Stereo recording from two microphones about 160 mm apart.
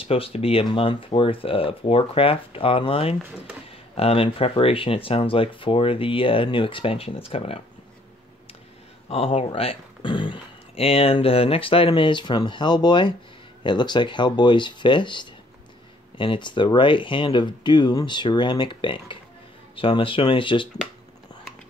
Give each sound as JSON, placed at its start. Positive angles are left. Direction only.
{"t": 0.0, "sound": "speech", "side_deg": 35}
{"t": 9.1, "sound": "speech", "side_deg": 40}